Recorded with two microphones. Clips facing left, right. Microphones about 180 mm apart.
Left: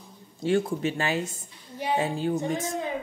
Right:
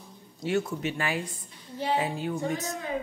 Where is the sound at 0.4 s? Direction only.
30° left (ahead or behind).